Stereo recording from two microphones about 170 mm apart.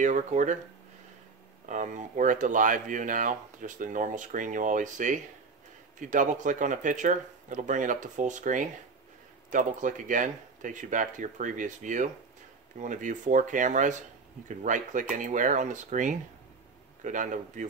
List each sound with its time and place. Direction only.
0.0 s speech: 45° right (ahead or behind)
1.7 s speech: 45° right (ahead or behind)